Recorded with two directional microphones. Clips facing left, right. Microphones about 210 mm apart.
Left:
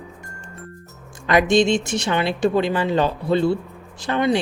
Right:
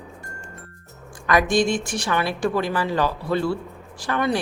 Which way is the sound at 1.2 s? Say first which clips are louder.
Left 3 dB; 25° left (ahead or behind).